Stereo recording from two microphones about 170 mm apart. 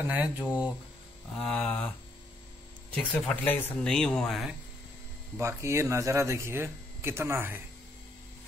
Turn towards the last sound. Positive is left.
turn(degrees=-15)  # may be behind; listen again after turning